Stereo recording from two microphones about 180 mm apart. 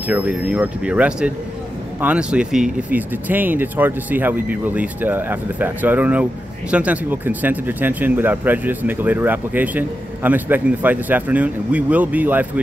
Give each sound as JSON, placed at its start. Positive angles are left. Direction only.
{"t": 0.1, "sound": "speech", "side_deg": -5}